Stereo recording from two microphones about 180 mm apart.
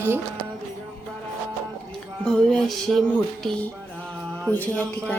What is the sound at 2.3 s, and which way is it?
Music, 5° left (ahead or behind).